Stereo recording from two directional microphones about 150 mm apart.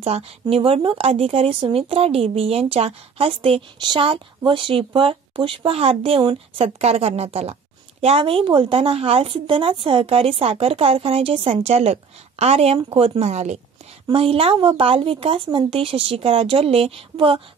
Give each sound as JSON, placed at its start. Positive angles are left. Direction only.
{"t": 0.0, "sound": "speech", "side_deg": -40}